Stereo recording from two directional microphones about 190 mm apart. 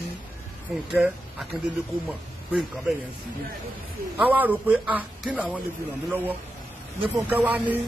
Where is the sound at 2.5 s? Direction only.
Centre (ahead or behind).